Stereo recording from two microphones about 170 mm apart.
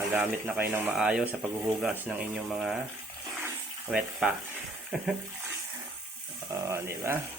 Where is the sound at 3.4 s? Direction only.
10° right (ahead or behind).